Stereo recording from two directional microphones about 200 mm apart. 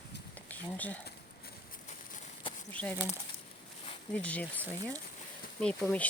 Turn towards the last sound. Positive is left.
turn(degrees=5)  # may be behind; listen again after turning